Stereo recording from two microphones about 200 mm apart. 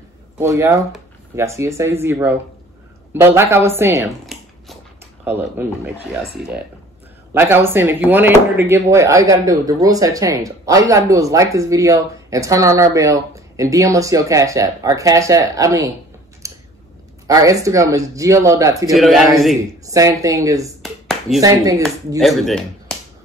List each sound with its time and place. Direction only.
0.4 s speech: 15° right (ahead or behind)
5.2 s speech: 10° right (ahead or behind)
7.3 s speech: 10° right (ahead or behind)
16.4 s a sound: 15° right (ahead or behind)
17.3 s speech: 15° right (ahead or behind)
18.9 s speech: centre (ahead or behind)
19.9 s speech: 15° right (ahead or behind)
20.8 s a sound: centre (ahead or behind)
21.4 s speech: 15° right (ahead or behind)
22.2 s speech: centre (ahead or behind)